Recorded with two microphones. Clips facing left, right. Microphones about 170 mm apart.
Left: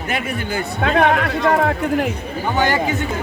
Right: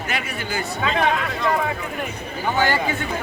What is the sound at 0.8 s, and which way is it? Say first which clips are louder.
Speech: left 6 dB; 55° left (ahead or behind).